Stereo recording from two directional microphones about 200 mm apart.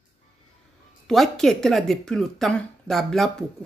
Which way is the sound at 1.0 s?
Centre (ahead or behind).